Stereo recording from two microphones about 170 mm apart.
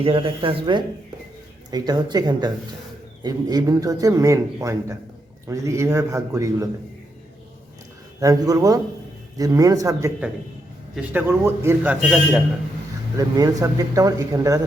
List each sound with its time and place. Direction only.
0.0 s speech: 35° right (ahead or behind)
8.2 s a man's voice: 20° right (ahead or behind)
13.1 s speech: 20° right (ahead or behind)